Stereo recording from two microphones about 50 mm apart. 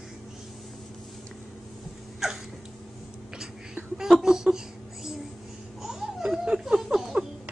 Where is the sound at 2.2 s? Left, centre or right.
Centre.